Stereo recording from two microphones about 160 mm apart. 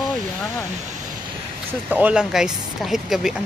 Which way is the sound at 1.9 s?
10° right (ahead or behind).